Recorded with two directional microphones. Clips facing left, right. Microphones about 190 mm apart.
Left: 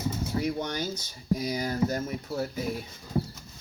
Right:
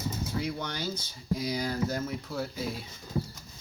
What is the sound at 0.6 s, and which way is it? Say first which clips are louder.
Speech: left 3 dB; 45° left (ahead or behind).